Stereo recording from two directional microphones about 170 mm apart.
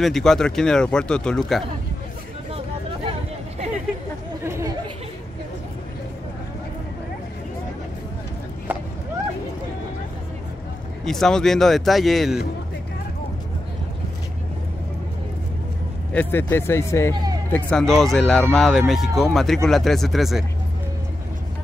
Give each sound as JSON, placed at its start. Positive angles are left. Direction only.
{"t": 0.0, "sound": "speech", "side_deg": 0}
{"t": 4.4, "sound": "chatter", "side_deg": -15}
{"t": 11.1, "sound": "speech", "side_deg": 5}
{"t": 16.1, "sound": "speech", "side_deg": 10}
{"t": 17.1, "sound": "music", "side_deg": -25}
{"t": 17.5, "sound": "speech", "side_deg": 5}